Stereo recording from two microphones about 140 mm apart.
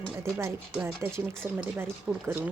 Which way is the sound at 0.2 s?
20° right (ahead or behind).